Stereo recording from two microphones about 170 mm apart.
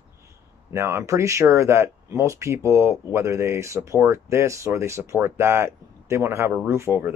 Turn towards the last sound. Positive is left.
turn(degrees=-15)  # may be behind; listen again after turning